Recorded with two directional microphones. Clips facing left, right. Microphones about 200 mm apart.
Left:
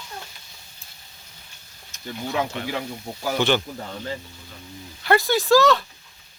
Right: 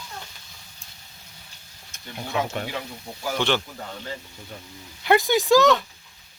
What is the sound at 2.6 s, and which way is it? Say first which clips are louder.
Speech: even; 45° right (ahead or behind).